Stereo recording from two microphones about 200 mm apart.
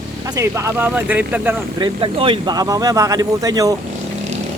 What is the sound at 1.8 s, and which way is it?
Speech, 25° right (ahead or behind).